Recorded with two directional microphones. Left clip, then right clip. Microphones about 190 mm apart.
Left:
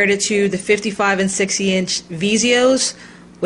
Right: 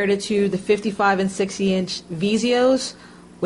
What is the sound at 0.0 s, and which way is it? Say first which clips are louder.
Speech: left 4 dB; 5° left (ahead or behind).